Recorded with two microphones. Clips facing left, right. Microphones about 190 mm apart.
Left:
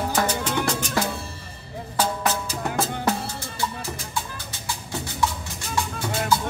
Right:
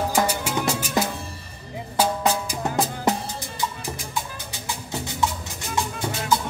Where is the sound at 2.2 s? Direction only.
15° right (ahead or behind).